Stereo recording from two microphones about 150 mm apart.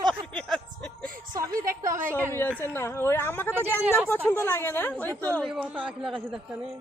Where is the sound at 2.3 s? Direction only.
15° left (ahead or behind).